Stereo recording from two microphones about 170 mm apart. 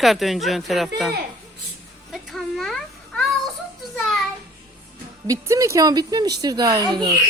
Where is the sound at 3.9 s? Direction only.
Centre (ahead or behind).